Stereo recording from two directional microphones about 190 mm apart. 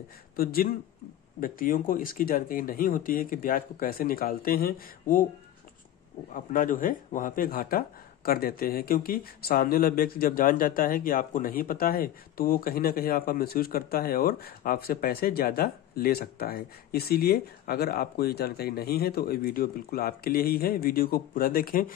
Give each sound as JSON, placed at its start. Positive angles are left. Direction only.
{"t": 0.4, "sound": "speech", "side_deg": 50}
{"t": 6.3, "sound": "speech", "side_deg": 45}